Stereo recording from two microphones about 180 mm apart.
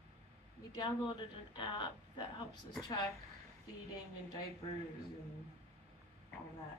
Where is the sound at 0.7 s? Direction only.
25° left (ahead or behind).